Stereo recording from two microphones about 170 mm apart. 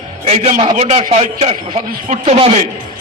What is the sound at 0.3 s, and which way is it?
A man's voice, 40° right (ahead or behind).